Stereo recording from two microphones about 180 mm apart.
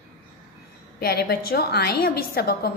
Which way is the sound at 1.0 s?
60° left (ahead or behind).